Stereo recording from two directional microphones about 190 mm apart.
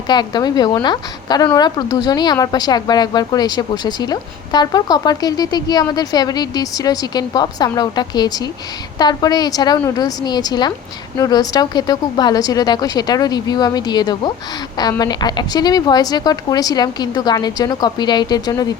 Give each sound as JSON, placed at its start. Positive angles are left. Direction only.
{"t": 0.1, "sound": "speech", "side_deg": 20}